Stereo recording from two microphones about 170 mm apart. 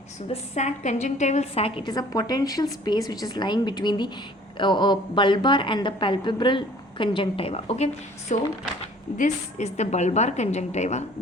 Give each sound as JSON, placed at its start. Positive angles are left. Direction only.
{"t": 0.5, "sound": "a woman's voice", "side_deg": 45}